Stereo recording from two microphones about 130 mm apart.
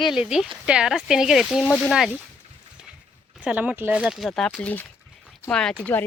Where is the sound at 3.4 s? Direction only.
10° right (ahead or behind).